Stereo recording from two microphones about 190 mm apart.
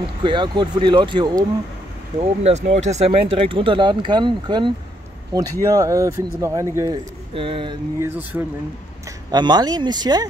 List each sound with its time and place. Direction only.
0.0 s speech: 25° right (ahead or behind)
2.1 s speech: 35° right (ahead or behind); by 7.0 s 15° right (ahead or behind)
7.3 s speech: 30° right (ahead or behind)
8.0 s speech: 10° right (ahead or behind)
9.3 s speech: 20° right (ahead or behind)